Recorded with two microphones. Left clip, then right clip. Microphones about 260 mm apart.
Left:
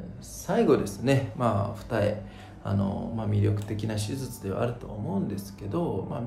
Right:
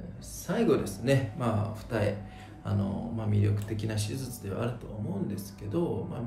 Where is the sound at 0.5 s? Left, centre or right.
Centre.